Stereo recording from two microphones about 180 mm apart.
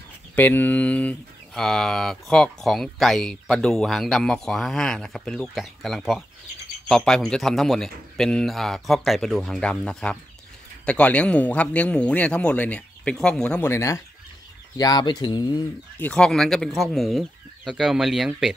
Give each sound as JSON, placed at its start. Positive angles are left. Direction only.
{"t": 0.4, "sound": "speech", "side_deg": 10}
{"t": 16.0, "sound": "speech", "side_deg": 5}